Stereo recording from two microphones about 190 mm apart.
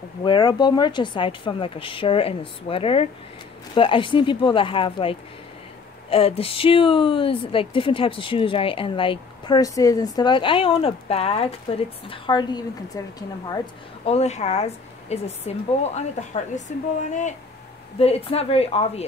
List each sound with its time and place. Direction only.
0.2 s speech: 25° left (ahead or behind)
14.0 s speech: 35° left (ahead or behind)